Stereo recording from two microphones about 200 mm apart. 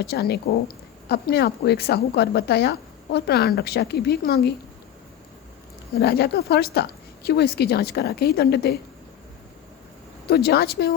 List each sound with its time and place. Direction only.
0.0 s a woman's voice: 55° left (ahead or behind)
6.0 s a woman's voice: 50° left (ahead or behind)
10.2 s a woman's voice: 50° left (ahead or behind)